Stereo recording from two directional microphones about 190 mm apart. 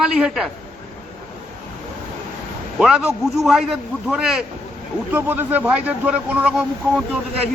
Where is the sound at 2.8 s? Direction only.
5° right (ahead or behind).